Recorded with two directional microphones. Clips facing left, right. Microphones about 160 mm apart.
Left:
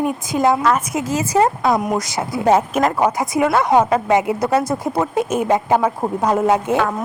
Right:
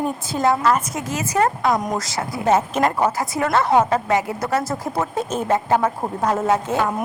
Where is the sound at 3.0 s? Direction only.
15° left (ahead or behind).